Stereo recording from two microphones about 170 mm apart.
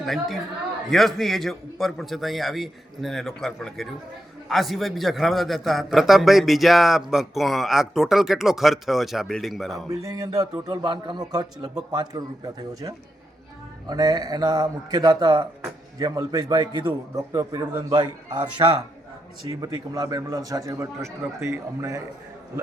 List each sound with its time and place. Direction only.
0.0 s a man's voice: centre (ahead or behind)
10.0 s a man's voice: 20° right (ahead or behind)
19.6 s a man's voice: 20° right (ahead or behind)